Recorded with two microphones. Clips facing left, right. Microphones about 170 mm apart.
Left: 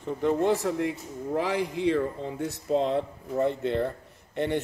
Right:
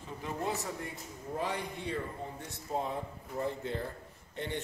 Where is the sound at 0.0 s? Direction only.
70° left (ahead or behind).